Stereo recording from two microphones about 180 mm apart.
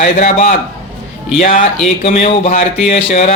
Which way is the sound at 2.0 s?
35° left (ahead or behind).